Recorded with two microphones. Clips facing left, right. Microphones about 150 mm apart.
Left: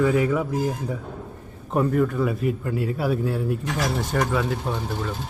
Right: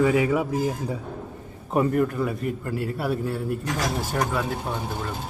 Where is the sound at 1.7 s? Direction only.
5° right (ahead or behind).